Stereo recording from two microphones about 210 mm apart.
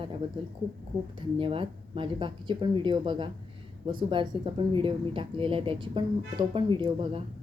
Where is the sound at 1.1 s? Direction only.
25° right (ahead or behind).